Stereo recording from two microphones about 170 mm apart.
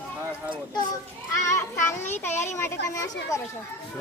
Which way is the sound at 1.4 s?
15° left (ahead or behind).